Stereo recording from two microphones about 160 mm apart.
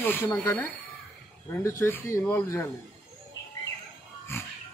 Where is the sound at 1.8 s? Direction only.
15° left (ahead or behind).